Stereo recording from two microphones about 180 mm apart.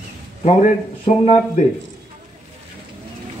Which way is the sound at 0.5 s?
40° left (ahead or behind).